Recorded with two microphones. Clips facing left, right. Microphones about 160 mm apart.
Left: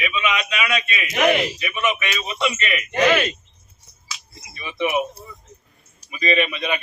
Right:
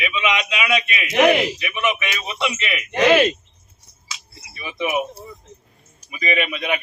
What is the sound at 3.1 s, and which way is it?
Speech, 25° right (ahead or behind).